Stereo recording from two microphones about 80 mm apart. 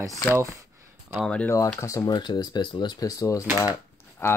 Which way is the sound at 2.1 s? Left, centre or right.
Left.